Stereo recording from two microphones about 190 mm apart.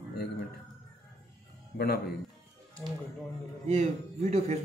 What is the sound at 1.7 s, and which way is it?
Speech, 55° left (ahead or behind).